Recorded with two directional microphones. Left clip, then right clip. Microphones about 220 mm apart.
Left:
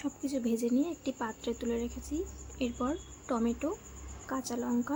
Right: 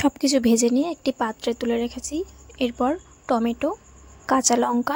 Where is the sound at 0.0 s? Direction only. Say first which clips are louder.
Right 15 dB; 45° right (ahead or behind).